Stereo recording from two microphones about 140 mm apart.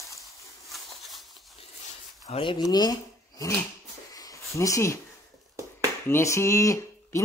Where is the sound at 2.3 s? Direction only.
35° left (ahead or behind).